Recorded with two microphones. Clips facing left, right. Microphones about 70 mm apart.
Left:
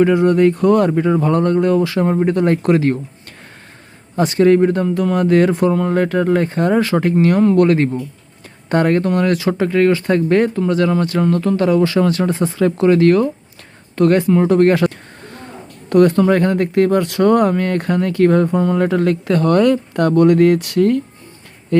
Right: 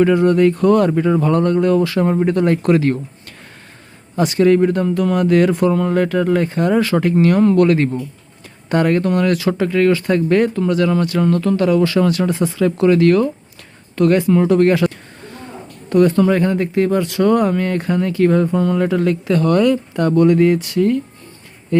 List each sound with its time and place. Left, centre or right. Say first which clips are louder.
0.0 s speech: even; centre
4.2 s speech: left 1 dB; left
14.4 s a sound: left 1 dB; left
15.9 s speech: left 1 dB; left